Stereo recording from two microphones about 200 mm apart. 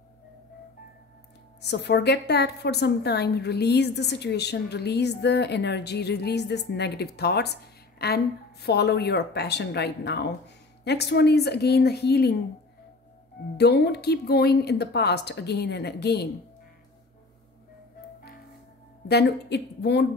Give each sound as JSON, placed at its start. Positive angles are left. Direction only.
{"t": 1.6, "sound": "a woman's voice", "side_deg": 55}
{"t": 13.6, "sound": "a woman's voice", "side_deg": 55}
{"t": 19.0, "sound": "a woman's voice", "side_deg": 55}